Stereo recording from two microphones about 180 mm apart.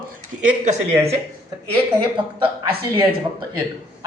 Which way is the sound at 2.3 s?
30° right (ahead or behind).